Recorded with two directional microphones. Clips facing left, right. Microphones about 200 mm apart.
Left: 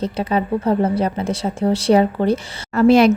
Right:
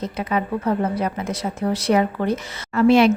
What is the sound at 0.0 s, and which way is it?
Speech, 30° left (ahead or behind).